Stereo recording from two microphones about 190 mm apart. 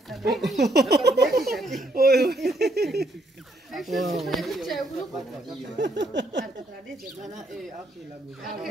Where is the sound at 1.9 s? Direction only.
55° right (ahead or behind).